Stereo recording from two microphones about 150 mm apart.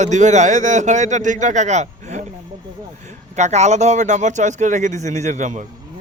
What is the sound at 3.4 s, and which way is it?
A man's voice, 50° right (ahead or behind).